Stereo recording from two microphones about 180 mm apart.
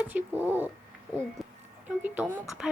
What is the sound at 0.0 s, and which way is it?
Speech, 10° right (ahead or behind).